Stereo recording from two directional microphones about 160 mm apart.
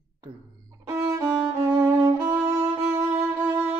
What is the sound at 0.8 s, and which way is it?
Speech, 20° right (ahead or behind).